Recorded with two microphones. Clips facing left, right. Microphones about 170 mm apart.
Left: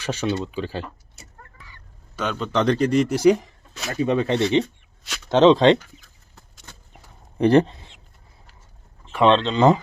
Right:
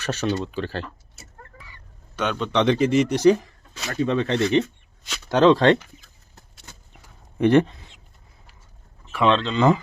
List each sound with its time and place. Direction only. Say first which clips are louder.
0.0 s speech: even; 10° left (ahead or behind)
2.1 s speech: right 1 dB; centre (ahead or behind)
3.2 s speech: even; 15° left (ahead or behind)
7.3 s speech: left 1 dB; 35° left (ahead or behind)
9.1 s speech: left 3 dB; 30° left (ahead or behind)